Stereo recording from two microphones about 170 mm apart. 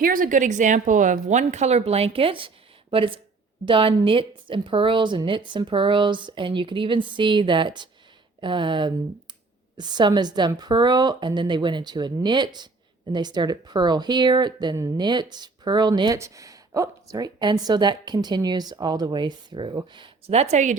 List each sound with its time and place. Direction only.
0.0 s speech: 55° right (ahead or behind)